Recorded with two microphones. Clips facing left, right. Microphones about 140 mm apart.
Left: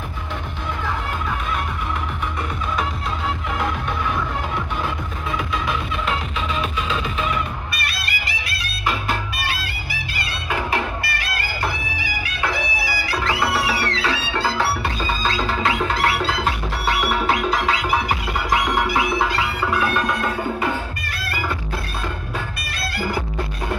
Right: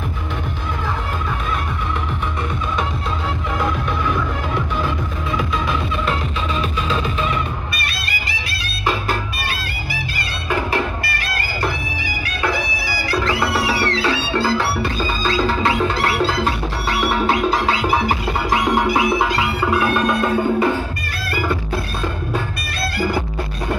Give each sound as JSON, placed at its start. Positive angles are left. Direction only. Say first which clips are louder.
{"t": 7.8, "sound": "music", "louder": "right 1 dB", "side_deg": -25}
{"t": 10.1, "sound": "music", "louder": "right 3 dB", "side_deg": -40}
{"t": 12.8, "sound": "music", "louder": "right 5 dB", "side_deg": -40}